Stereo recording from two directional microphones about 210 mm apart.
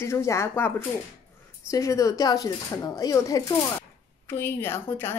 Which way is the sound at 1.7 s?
15° left (ahead or behind).